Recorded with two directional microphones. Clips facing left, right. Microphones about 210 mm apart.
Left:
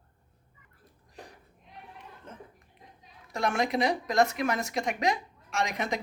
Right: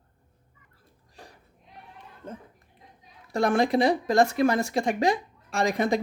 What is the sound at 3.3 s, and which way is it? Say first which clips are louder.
Speech: right 6 dB; 30° right (ahead or behind).